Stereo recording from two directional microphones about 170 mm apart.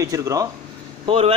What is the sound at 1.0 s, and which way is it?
Speech, 35° right (ahead or behind).